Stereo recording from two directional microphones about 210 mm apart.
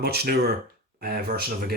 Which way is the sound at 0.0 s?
50° right (ahead or behind).